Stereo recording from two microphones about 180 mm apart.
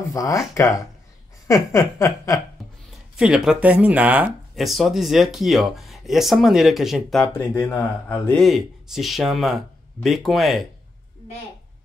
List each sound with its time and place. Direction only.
0.1 s speech: 20° left (ahead or behind)
1.5 s speech: 15° left (ahead or behind)
2.9 s speech: 5° right (ahead or behind)
7.3 s speech: 15° left (ahead or behind)
8.4 s speech: centre (ahead or behind)